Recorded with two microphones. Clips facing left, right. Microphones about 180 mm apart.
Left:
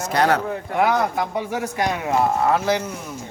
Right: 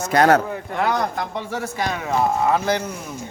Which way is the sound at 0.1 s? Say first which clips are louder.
Right 4 dB; 45° right (ahead or behind).